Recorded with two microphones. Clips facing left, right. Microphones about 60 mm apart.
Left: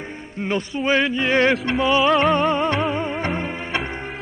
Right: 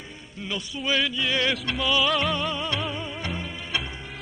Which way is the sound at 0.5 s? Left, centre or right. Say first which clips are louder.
Left 7 dB; left.